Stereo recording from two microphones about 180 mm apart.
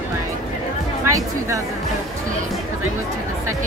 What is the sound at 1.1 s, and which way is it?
Speech, 15° right (ahead or behind).